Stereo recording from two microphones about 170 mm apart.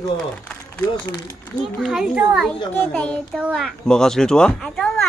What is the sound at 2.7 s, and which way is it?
Speech, 10° left (ahead or behind).